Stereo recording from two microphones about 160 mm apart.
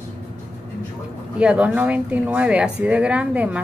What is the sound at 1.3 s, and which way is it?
Speech, 5° right (ahead or behind).